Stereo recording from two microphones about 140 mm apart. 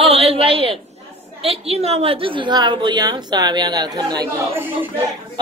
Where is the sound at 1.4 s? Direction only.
45° right (ahead or behind); by 4.3 s 30° right (ahead or behind).